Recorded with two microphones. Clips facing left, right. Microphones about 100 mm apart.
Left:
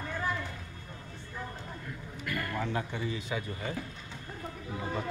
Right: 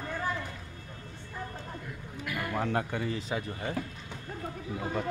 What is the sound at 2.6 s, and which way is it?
Speech, 55° right (ahead or behind).